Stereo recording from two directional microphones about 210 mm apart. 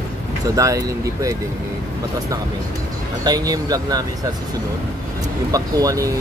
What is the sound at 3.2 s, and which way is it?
Speech, 20° right (ahead or behind).